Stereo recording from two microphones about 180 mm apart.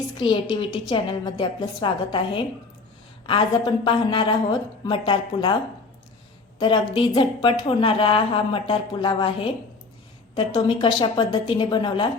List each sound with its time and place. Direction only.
0.2 s a woman's voice: 25° left (ahead or behind)
3.8 s a woman's voice: 25° left (ahead or behind)
6.6 s a woman's voice: 25° left (ahead or behind)